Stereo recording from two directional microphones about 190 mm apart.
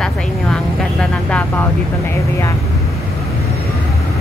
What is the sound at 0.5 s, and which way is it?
Vehicle, 5° left (ahead or behind).